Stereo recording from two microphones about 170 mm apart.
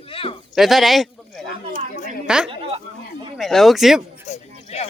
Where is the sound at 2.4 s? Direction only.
35° right (ahead or behind).